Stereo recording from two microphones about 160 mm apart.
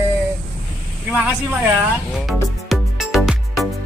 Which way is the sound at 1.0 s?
5° right (ahead or behind).